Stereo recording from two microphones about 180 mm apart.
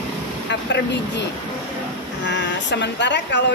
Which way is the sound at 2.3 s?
75° left (ahead or behind).